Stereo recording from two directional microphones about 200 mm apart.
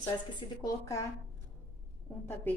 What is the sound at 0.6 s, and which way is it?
Speech, 15° left (ahead or behind).